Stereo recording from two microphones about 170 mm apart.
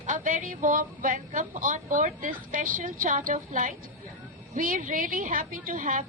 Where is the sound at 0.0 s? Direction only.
50° right (ahead or behind).